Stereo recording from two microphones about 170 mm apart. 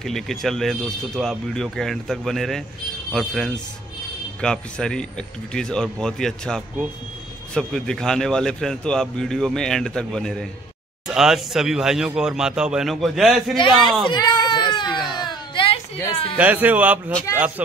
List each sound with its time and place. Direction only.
0.0 s a man's voice: centre (ahead or behind)
14.0 s baby cry: 25° left (ahead or behind)
16.3 s speech: 10° right (ahead or behind)